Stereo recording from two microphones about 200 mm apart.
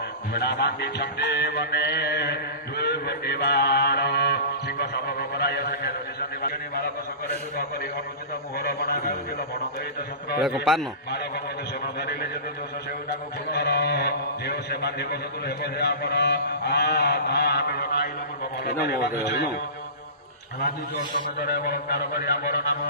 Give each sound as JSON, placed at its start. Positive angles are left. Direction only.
{"t": 0.3, "sound": "music", "side_deg": 55}
{"t": 6.4, "sound": "a sound", "side_deg": 50}
{"t": 8.5, "sound": "a man's voice", "side_deg": 50}
{"t": 10.4, "sound": "a man's voice", "side_deg": 0}
{"t": 13.5, "sound": "a man's voice", "side_deg": 55}
{"t": 20.6, "sound": "a man's voice", "side_deg": 45}